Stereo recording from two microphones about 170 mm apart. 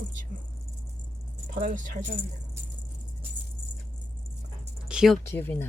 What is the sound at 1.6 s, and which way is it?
Speech, 50° right (ahead or behind).